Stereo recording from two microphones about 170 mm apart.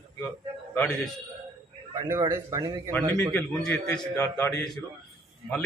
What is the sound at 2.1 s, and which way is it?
Speech, 20° right (ahead or behind).